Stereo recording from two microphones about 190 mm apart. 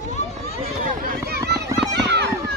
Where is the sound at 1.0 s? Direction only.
55° right (ahead or behind).